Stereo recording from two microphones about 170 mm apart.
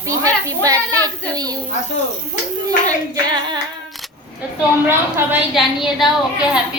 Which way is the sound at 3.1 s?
25° right (ahead or behind).